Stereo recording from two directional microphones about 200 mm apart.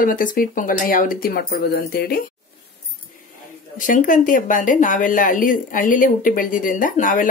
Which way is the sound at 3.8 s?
40° left (ahead or behind).